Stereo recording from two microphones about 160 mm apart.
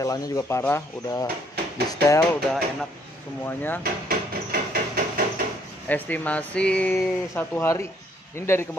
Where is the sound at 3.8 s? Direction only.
70° right (ahead or behind).